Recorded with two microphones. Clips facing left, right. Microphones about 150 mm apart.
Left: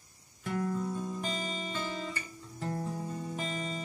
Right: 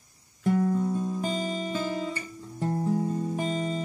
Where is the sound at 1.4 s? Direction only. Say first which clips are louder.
Right 7 dB; 45° right (ahead or behind).